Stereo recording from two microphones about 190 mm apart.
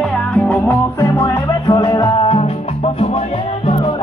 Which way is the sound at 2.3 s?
30° left (ahead or behind).